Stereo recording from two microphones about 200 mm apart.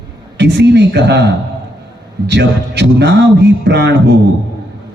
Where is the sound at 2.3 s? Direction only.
60° right (ahead or behind).